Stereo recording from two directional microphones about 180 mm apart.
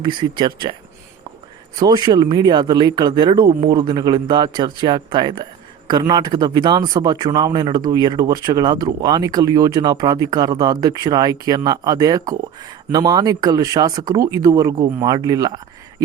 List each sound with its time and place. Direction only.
0.0 s speech: 25° right (ahead or behind)
1.7 s speech: 20° right (ahead or behind)